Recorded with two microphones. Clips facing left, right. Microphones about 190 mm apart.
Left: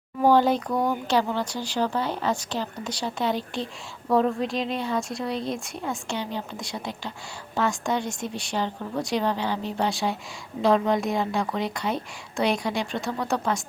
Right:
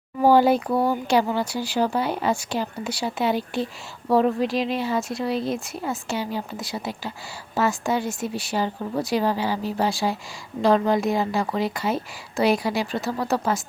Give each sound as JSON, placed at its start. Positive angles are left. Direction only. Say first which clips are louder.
{"t": 0.2, "sound": "a woman's voice", "louder": "right 3 dB", "side_deg": -10}